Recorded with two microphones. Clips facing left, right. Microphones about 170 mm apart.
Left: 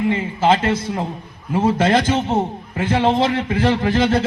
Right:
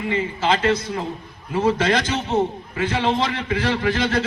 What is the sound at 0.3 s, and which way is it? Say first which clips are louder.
A man's voice: left 3 dB; 50° left (ahead or behind).